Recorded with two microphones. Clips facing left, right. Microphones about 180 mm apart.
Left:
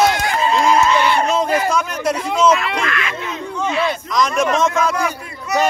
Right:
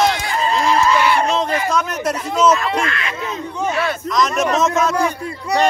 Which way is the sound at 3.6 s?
45° right (ahead or behind).